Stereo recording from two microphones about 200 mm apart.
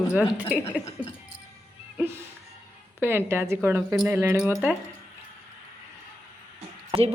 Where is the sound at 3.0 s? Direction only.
10° right (ahead or behind).